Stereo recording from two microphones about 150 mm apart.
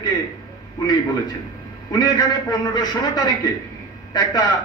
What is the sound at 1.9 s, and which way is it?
A man's voice, 30° left (ahead or behind).